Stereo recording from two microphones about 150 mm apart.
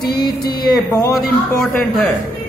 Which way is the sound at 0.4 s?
90° left.